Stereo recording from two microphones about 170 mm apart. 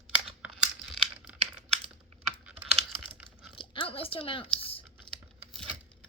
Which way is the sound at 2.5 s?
5° right (ahead or behind).